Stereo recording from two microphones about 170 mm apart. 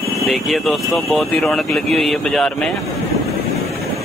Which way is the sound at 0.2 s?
Centre (ahead or behind).